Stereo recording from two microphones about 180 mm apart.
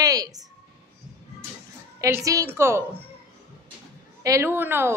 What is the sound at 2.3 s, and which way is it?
Speech, 15° right (ahead or behind).